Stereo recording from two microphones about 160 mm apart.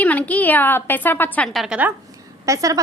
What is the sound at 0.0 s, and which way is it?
A woman's voice, 10° left (ahead or behind).